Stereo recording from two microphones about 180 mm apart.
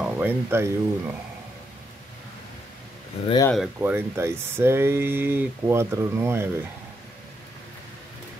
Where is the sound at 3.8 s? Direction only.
15° right (ahead or behind).